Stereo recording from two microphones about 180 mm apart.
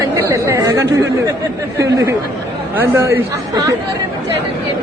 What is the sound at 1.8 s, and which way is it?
Speech, 15° right (ahead or behind).